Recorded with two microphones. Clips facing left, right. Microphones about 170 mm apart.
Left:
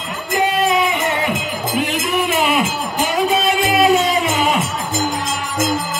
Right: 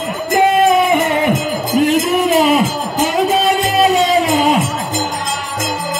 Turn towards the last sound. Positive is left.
turn(degrees=-35)  # may be behind; listen again after turning